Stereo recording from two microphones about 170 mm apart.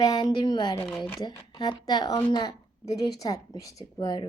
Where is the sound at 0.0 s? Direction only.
20° left (ahead or behind).